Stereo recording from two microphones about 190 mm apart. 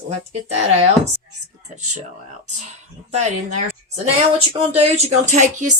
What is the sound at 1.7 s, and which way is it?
Speech, 40° right (ahead or behind).